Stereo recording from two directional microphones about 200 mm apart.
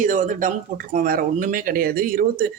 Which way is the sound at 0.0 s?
40° right (ahead or behind).